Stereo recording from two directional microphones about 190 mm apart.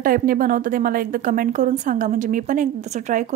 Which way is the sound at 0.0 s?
45° right (ahead or behind).